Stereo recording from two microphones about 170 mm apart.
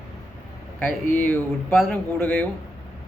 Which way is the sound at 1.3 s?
5° left (ahead or behind).